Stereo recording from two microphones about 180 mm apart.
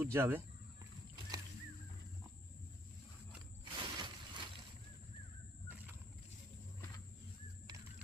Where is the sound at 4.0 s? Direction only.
25° right (ahead or behind).